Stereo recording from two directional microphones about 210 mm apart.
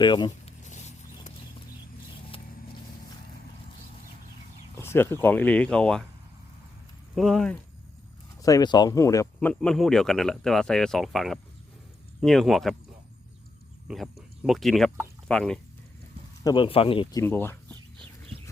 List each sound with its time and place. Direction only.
0.0 s speech: 20° left (ahead or behind)
0.7 s a sound: 35° left (ahead or behind)
4.8 s speech: 10° left (ahead or behind)
7.2 s speech: centre (ahead or behind)
8.4 s speech: 15° left (ahead or behind)
9.5 s speech: 5° left (ahead or behind)
13.8 s speech: centre (ahead or behind)
16.4 s speech: 20° left (ahead or behind)